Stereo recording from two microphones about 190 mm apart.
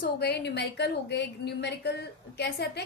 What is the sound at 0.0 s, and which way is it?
A woman's voice, 60° left (ahead or behind).